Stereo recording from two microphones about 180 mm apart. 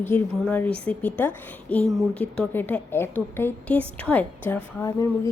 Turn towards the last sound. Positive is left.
turn(degrees=15)  # may be behind; listen again after turning